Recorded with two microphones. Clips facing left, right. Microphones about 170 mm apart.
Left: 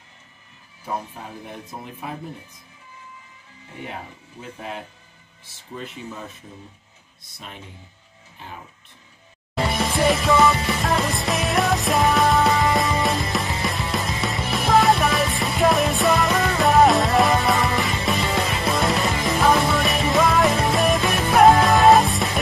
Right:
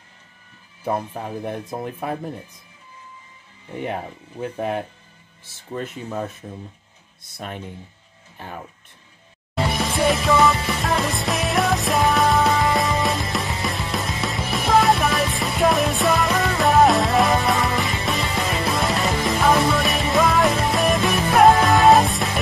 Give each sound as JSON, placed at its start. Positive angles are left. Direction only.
{"t": 1.4, "sound": "speech", "side_deg": -55}
{"t": 3.8, "sound": "speech", "side_deg": -60}
{"t": 7.3, "sound": "speech", "side_deg": -55}
{"t": 9.7, "sound": "music", "side_deg": 0}